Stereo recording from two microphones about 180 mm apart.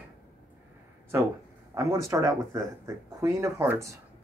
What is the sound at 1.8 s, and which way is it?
Speech, 15° right (ahead or behind).